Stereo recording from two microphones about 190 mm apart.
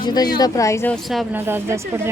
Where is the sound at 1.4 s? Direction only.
10° right (ahead or behind).